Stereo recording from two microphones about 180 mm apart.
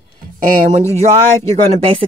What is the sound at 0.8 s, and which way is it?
Speech, 15° left (ahead or behind).